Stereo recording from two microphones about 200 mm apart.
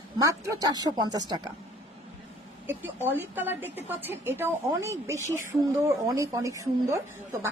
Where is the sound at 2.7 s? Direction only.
10° right (ahead or behind).